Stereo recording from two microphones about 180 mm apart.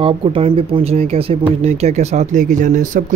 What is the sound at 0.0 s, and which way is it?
Speech, 30° right (ahead or behind).